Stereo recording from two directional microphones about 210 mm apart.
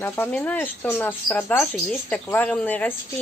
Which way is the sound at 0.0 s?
10° left (ahead or behind).